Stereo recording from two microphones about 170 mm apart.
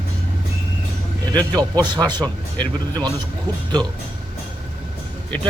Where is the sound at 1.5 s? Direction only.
25° right (ahead or behind).